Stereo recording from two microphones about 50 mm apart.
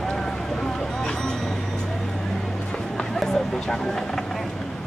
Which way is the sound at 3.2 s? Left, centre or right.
Centre.